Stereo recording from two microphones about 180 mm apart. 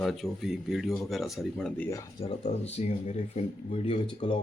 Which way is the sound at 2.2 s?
30° left (ahead or behind).